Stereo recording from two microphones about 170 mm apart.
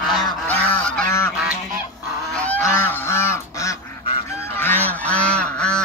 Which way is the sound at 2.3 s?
10° left (ahead or behind).